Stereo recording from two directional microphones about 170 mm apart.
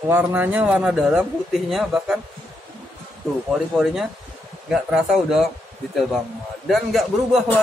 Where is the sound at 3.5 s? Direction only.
5° right (ahead or behind).